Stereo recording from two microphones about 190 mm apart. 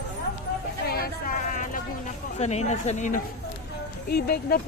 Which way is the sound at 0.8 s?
55° left (ahead or behind).